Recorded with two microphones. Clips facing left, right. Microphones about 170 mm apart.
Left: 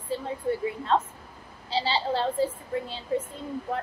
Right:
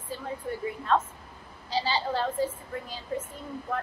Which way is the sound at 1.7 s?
30° left (ahead or behind).